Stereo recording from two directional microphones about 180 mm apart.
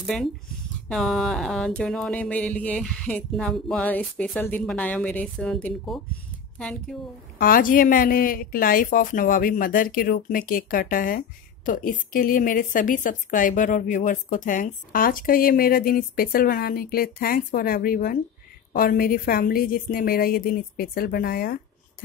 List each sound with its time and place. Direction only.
0.0 s speech: centre (ahead or behind)
0.8 s music: centre (ahead or behind)
7.3 s speech: 50° left (ahead or behind)